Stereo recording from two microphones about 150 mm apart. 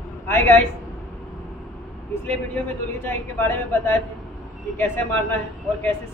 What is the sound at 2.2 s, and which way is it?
Speech, 15° left (ahead or behind).